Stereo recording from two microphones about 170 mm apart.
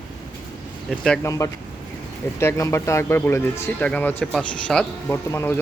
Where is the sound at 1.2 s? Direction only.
20° left (ahead or behind).